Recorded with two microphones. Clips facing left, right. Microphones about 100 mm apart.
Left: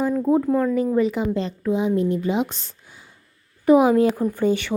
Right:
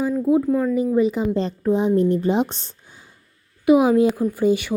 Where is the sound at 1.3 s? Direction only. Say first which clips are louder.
Right 3 dB; 35° right (ahead or behind).